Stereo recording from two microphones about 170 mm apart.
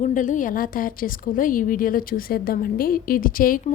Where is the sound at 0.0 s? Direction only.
50° left (ahead or behind).